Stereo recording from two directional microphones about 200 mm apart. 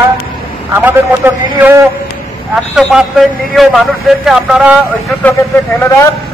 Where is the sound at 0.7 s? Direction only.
10° right (ahead or behind).